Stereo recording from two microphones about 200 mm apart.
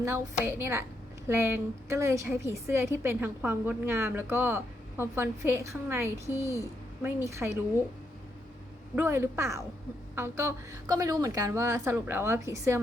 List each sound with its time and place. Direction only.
0.0 s a woman's voice: 15° right (ahead or behind)
9.0 s a woman's voice: 10° right (ahead or behind)